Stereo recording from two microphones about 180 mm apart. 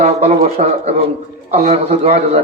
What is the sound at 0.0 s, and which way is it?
A man's voice, 35° right (ahead or behind).